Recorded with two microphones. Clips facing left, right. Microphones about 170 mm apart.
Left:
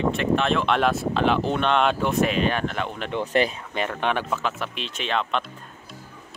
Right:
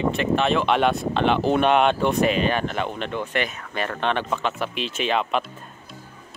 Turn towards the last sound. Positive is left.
turn(degrees=-5)  # may be behind; listen again after turning